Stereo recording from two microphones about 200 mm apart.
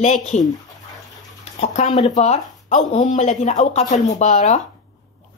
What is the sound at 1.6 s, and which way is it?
Speech, 35° left (ahead or behind).